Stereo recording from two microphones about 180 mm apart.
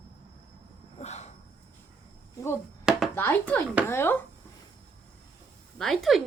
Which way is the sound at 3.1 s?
10° left (ahead or behind).